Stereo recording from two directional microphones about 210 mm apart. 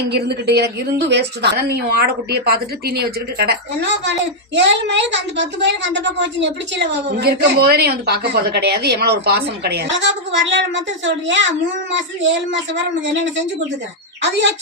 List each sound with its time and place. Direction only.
0.1 s a woman's voice: 50° right (ahead or behind)